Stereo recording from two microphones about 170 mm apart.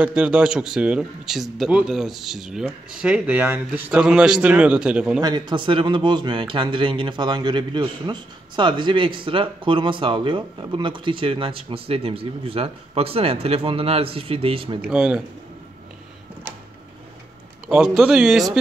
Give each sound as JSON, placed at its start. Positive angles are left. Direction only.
{"t": 0.0, "sound": "speech", "side_deg": -5}
{"t": 5.2, "sound": "a man's voice", "side_deg": -25}
{"t": 14.9, "sound": "speech", "side_deg": -5}
{"t": 17.6, "sound": "speech", "side_deg": 0}